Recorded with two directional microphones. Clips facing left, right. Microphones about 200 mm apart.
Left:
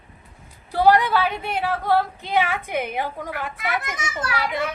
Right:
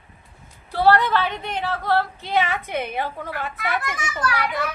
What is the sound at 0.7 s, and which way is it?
A woman's voice, 10° left (ahead or behind).